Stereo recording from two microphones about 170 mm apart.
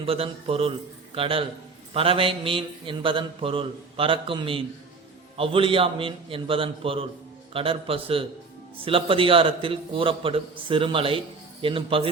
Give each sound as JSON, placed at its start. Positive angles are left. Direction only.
{"t": 0.0, "sound": "mantra", "side_deg": -35}